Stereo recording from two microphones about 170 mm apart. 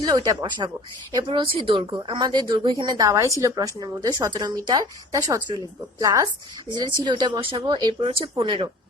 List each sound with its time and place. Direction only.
0.0 s speech: 20° right (ahead or behind)